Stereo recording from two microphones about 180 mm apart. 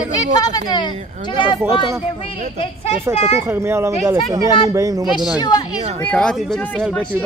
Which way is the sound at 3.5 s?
15° right (ahead or behind).